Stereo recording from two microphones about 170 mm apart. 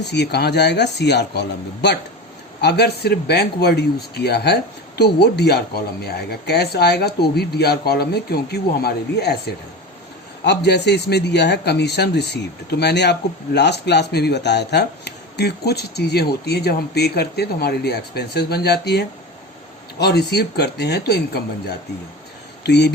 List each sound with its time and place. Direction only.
0.0 s a man's voice: 80° left
22.6 s speech: 85° left